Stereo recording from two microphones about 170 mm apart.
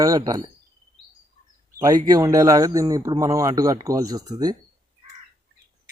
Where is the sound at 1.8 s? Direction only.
20° right (ahead or behind).